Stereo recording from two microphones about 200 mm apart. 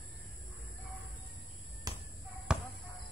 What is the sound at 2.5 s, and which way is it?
Basketball bounce, 5° right (ahead or behind).